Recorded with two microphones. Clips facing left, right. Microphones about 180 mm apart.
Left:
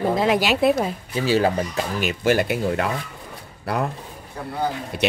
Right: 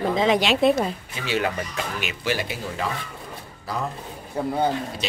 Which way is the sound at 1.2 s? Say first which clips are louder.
Left 6 dB; 35° left (ahead or behind).